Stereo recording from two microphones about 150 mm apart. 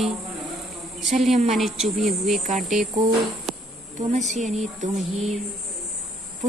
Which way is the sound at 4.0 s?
50° right (ahead or behind).